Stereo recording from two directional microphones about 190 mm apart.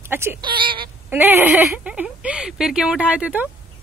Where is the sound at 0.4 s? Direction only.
25° right (ahead or behind).